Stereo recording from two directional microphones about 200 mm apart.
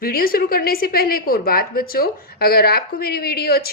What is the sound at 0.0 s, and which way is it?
A woman's voice, 45° left (ahead or behind).